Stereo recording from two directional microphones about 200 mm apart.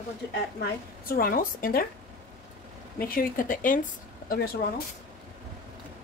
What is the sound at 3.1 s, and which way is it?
Speech, 45° left (ahead or behind).